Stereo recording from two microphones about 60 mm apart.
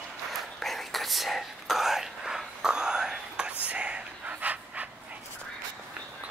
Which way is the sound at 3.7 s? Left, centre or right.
Centre.